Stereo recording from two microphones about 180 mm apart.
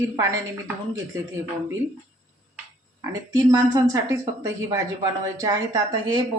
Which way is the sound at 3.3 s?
20° right (ahead or behind).